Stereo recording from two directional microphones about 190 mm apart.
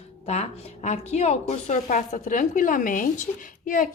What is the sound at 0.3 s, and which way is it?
A woman's voice, 35° left (ahead or behind).